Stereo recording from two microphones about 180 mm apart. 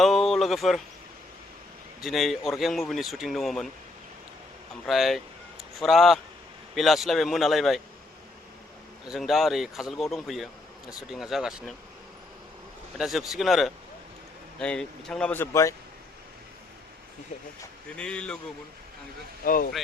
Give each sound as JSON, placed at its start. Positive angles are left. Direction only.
{"t": 0.0, "sound": "a sound", "side_deg": 0}
{"t": 2.0, "sound": "speech", "side_deg": 0}
{"t": 4.9, "sound": "speech", "side_deg": 0}
{"t": 9.0, "sound": "speech", "side_deg": 0}
{"t": 13.0, "sound": "speech", "side_deg": 0}
{"t": 17.9, "sound": "speech", "side_deg": 5}
{"t": 19.5, "sound": "speech", "side_deg": 50}